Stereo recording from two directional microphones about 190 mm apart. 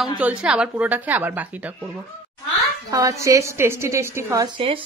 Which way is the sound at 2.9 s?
15° right (ahead or behind).